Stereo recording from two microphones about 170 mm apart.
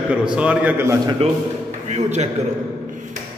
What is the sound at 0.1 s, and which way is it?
Speech, 5° right (ahead or behind).